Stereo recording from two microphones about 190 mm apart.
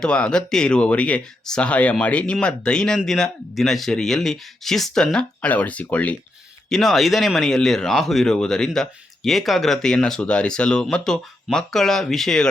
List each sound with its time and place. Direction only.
0.0 s speech: 5° left (ahead or behind)